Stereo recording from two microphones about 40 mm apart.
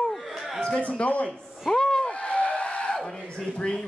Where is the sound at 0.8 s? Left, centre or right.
Left.